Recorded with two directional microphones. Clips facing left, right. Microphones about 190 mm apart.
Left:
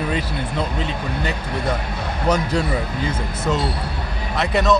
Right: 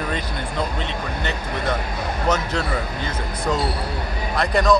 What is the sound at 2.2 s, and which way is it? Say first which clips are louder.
Speech: left 3 dB; 10° left (ahead or behind).